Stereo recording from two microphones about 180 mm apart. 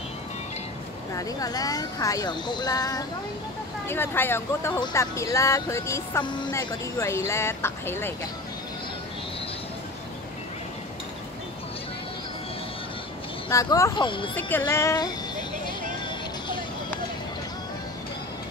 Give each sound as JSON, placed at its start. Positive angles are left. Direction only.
{"t": 1.1, "sound": "speech", "side_deg": 20}
{"t": 13.5, "sound": "speech", "side_deg": 15}
{"t": 14.6, "sound": "music", "side_deg": 15}